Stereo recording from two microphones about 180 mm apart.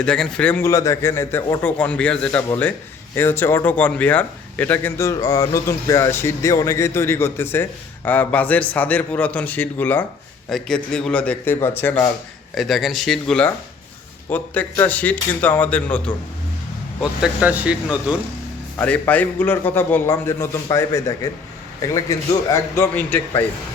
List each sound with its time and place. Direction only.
0.0 s speech: 5° left (ahead or behind)
12.5 s speech: centre (ahead or behind)
17.0 s speech: 5° right (ahead or behind)
18.8 s speech: 10° left (ahead or behind)